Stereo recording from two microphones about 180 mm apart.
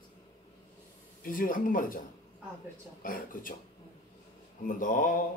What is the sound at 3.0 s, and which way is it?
Speech, 50° left (ahead or behind).